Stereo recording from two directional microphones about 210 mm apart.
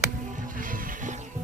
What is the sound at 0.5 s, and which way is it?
Music, 40° right (ahead or behind).